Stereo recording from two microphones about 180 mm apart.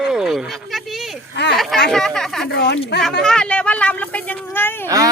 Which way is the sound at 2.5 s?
70° left (ahead or behind).